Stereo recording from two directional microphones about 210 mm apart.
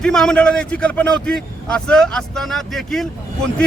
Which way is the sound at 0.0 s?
Centre (ahead or behind).